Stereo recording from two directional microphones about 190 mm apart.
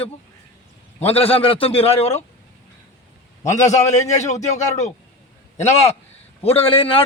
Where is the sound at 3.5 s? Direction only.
40° left (ahead or behind).